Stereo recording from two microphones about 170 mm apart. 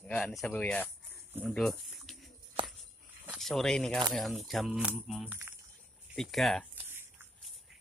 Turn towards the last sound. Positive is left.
turn(degrees=-10)  # may be behind; listen again after turning